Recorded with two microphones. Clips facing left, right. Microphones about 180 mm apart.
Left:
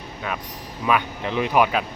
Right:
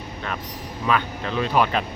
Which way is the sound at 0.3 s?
10° left (ahead or behind).